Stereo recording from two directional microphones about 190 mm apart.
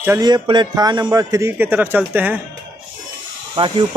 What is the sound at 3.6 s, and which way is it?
Speech, 30° right (ahead or behind).